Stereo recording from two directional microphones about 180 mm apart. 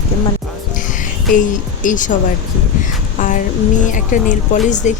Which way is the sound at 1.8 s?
45° left (ahead or behind).